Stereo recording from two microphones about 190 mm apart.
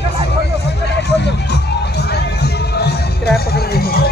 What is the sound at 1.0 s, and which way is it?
Music, 65° left (ahead or behind).